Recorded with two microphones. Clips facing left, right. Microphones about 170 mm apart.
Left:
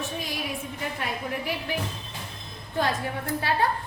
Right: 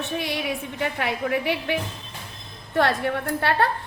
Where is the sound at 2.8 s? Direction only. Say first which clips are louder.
Right 5 dB; 70° right (ahead or behind).